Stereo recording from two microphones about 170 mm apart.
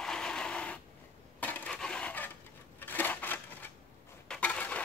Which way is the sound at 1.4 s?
10° left (ahead or behind).